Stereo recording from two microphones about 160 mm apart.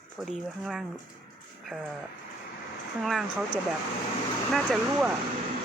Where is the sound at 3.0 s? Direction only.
Centre (ahead or behind).